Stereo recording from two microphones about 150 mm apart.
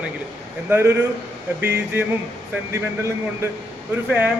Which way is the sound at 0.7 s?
15° right (ahead or behind).